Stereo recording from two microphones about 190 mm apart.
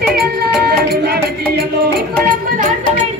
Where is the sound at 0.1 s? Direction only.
55° right (ahead or behind).